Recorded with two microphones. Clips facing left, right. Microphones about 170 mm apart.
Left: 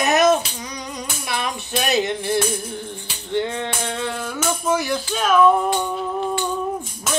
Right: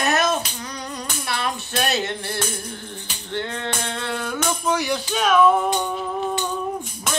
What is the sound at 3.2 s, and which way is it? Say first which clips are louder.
Music: left 4 dB; 15° left (ahead or behind).